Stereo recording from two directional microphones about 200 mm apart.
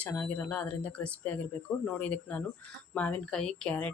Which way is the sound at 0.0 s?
5° left (ahead or behind).